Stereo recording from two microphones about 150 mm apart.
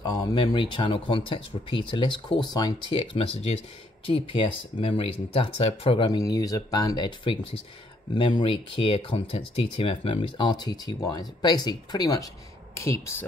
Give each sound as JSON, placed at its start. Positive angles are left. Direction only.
{"t": 0.0, "sound": "speech", "side_deg": 25}